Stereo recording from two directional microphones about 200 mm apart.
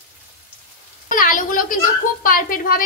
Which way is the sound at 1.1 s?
45° left (ahead or behind).